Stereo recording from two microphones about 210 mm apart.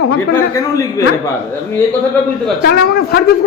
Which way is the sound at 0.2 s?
15° left (ahead or behind).